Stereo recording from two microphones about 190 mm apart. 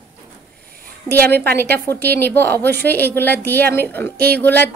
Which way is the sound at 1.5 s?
10° left (ahead or behind).